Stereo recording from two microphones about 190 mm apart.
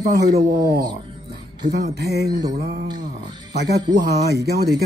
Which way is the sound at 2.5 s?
50° right (ahead or behind).